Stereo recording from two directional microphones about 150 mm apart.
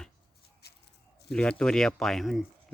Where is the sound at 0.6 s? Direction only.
90° left.